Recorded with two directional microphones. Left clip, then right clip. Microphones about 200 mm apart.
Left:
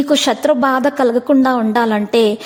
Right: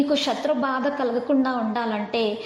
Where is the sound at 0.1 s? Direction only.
55° left (ahead or behind).